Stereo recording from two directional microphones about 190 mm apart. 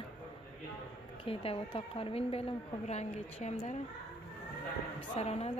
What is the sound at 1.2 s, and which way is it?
A woman's voice, 30° left (ahead or behind).